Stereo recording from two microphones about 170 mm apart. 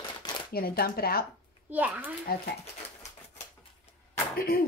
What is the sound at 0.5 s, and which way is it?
Speech, 60° left (ahead or behind).